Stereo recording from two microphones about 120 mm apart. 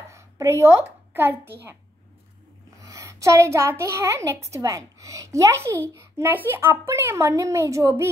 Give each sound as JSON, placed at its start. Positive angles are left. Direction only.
{"t": 0.1, "sound": "a child's voice", "side_deg": -25}
{"t": 2.8, "sound": "a woman's voice", "side_deg": -25}